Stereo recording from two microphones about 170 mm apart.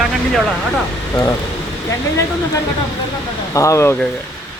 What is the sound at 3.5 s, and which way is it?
Speech, 20° left (ahead or behind).